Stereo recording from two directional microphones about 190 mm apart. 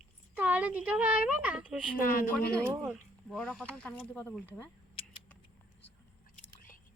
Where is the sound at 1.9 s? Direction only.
45° left (ahead or behind).